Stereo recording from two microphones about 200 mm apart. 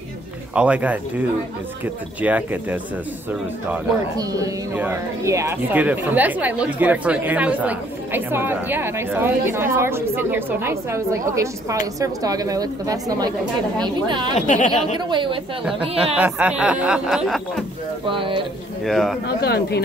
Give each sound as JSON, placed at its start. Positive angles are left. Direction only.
{"t": 0.6, "sound": "speech", "side_deg": -5}
{"t": 2.2, "sound": "speech", "side_deg": -10}
{"t": 4.2, "sound": "a woman's voice", "side_deg": -15}
{"t": 14.3, "sound": "speech", "side_deg": 35}
{"t": 15.0, "sound": "a woman's voice", "side_deg": -25}
{"t": 16.2, "sound": "speech", "side_deg": -10}
{"t": 18.1, "sound": "a woman's voice", "side_deg": -25}
{"t": 18.9, "sound": "speech", "side_deg": 0}
{"t": 19.2, "sound": "speech", "side_deg": 50}